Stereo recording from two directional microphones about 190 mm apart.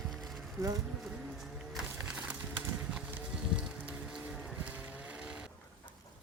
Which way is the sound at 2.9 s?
5° right (ahead or behind).